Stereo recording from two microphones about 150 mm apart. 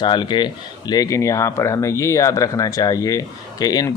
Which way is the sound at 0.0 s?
30° left (ahead or behind).